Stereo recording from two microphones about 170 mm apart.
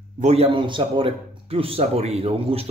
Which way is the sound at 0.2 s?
40° right (ahead or behind).